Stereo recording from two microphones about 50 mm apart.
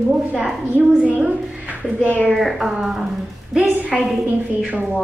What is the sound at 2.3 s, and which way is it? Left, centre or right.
A woman's voice, centre.